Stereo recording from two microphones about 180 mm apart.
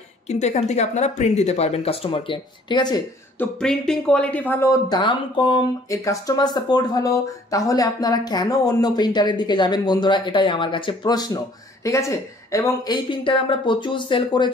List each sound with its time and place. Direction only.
0.3 s speech: 40° left (ahead or behind)
3.3 s speech: 5° left (ahead or behind); by 14.5 s 25° left (ahead or behind)